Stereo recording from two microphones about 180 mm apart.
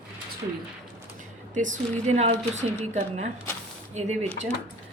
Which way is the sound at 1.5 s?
45° right (ahead or behind).